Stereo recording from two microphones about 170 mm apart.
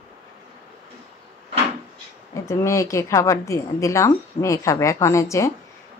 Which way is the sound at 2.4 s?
20° left (ahead or behind).